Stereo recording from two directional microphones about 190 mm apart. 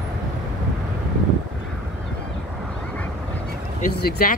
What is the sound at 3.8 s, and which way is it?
Speech, 50° left (ahead or behind).